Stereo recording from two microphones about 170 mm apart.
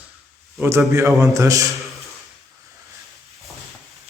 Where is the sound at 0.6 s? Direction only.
15° right (ahead or behind).